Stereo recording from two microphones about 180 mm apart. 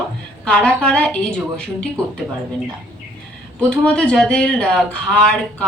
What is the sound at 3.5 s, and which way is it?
Speech, 5° left (ahead or behind).